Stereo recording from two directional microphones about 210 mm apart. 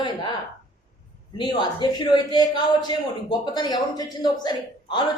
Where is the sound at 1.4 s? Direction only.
20° left (ahead or behind).